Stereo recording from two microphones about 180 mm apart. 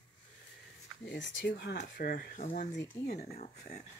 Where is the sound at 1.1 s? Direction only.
70° left (ahead or behind); by 2.3 s 55° left (ahead or behind).